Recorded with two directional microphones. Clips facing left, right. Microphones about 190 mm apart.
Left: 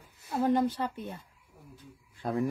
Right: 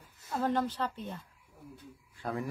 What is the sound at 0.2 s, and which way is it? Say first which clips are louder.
Speech: left 4 dB; 10° left (ahead or behind).